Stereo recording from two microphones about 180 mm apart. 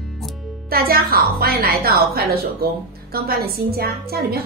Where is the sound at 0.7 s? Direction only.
55° right (ahead or behind).